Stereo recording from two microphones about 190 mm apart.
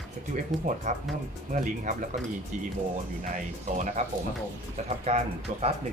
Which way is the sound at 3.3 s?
40° right (ahead or behind).